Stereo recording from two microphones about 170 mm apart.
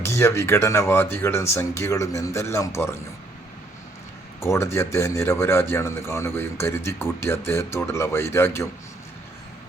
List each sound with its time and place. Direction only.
0.0 s a man's voice: 15° left (ahead or behind)
4.4 s a man's voice: 15° left (ahead or behind)